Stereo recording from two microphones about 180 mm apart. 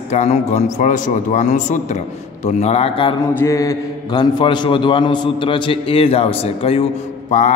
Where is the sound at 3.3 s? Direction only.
15° left (ahead or behind).